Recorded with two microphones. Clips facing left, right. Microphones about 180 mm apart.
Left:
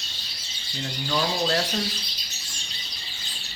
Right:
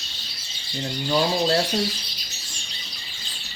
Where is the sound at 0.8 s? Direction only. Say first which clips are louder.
Right 4 dB; 30° right (ahead or behind).